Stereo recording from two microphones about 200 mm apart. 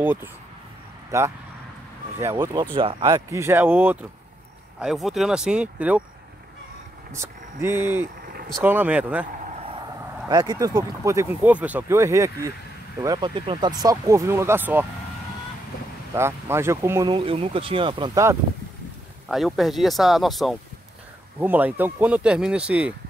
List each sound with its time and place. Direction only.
0.0 s speech: 10° right (ahead or behind); by 3.2 s 25° right (ahead or behind)
3.3 s speech: 15° right (ahead or behind)
7.2 s speech: 10° right (ahead or behind)
9.6 s speech: 25° right (ahead or behind); by 14.9 s 10° right (ahead or behind)
16.2 s speech: 15° right (ahead or behind)
17.1 s speech: 25° right (ahead or behind)
19.2 s speech: centre (ahead or behind)